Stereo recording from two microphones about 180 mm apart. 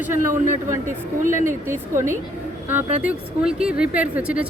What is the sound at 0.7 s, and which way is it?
Speech, 45° right (ahead or behind).